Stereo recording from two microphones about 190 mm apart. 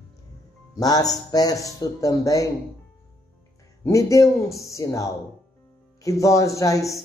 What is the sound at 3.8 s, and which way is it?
Speech, 15° left (ahead or behind).